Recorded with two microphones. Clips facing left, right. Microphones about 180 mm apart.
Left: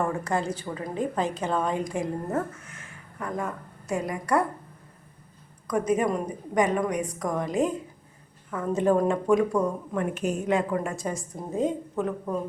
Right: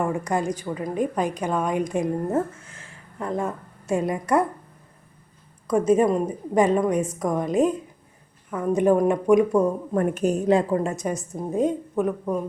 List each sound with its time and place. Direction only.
0.0 s a woman's voice: 15° right (ahead or behind)
5.6 s a woman's voice: 25° right (ahead or behind)
9.9 s a woman's voice: 45° right (ahead or behind)
10.9 s a woman's voice: 20° right (ahead or behind)